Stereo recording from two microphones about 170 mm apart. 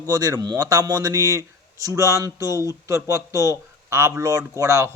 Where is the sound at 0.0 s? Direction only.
20° right (ahead or behind).